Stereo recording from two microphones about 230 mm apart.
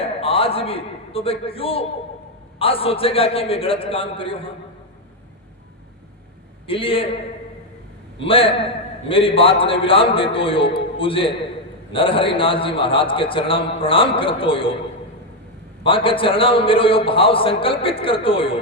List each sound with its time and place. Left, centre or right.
0.0 s a man's voice: left
6.7 s a man's voice: left
8.2 s a man's voice: left
15.8 s a man's voice: left